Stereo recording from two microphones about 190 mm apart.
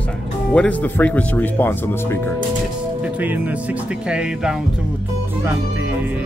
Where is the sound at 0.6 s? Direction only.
10° left (ahead or behind).